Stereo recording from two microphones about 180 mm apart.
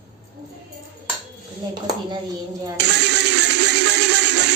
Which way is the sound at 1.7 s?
25° right (ahead or behind).